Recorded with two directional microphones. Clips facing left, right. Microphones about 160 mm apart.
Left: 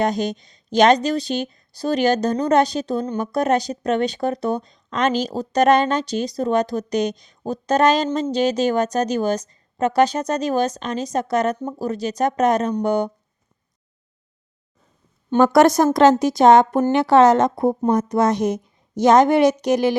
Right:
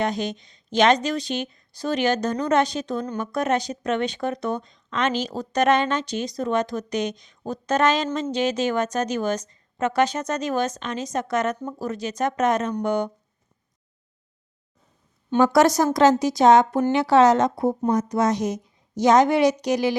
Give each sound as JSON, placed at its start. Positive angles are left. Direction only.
{"t": 0.0, "sound": "speech", "side_deg": 40}
{"t": 15.3, "sound": "a woman's voice", "side_deg": 55}